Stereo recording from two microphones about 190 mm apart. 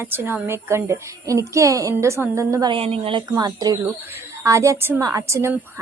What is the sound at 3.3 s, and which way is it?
A woman's voice, 20° right (ahead or behind).